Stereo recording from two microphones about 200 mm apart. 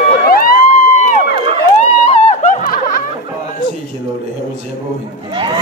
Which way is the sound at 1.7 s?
35° left (ahead or behind).